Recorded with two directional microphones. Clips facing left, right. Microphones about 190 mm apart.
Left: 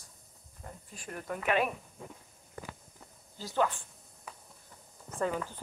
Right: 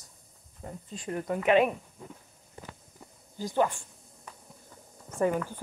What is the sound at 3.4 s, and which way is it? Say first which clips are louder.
Speech: right 3 dB; 15° right (ahead or behind).